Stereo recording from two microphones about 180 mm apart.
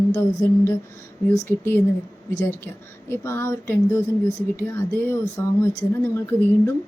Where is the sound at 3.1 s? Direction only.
15° left (ahead or behind).